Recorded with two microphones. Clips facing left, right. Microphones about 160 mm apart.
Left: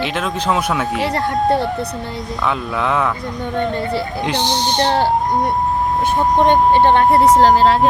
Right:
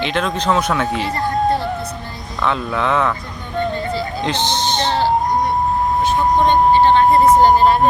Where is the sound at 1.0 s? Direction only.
75° left (ahead or behind).